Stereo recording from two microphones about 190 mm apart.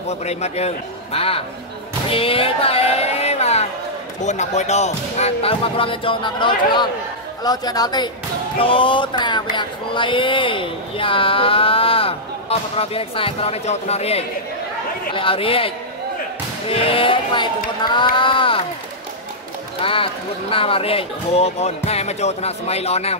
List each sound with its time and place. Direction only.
0.1 s speech: 35° left (ahead or behind)
19.8 s speech: 30° left (ahead or behind)